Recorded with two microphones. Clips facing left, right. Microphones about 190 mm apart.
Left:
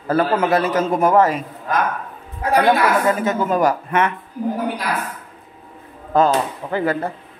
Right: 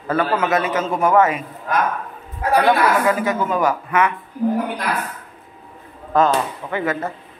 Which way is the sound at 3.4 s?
40° left (ahead or behind).